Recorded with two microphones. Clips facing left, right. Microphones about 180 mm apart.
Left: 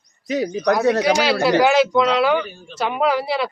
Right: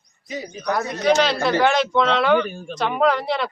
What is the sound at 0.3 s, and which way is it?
Speech, 80° left.